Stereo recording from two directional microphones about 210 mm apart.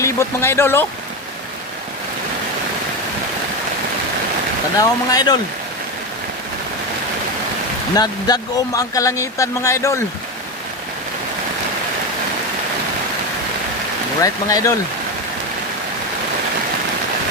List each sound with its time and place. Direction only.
0.0 s speech: 10° left (ahead or behind)
4.8 s speech: 20° left (ahead or behind)
7.9 s speech: 20° left (ahead or behind)
14.2 s speech: 15° left (ahead or behind)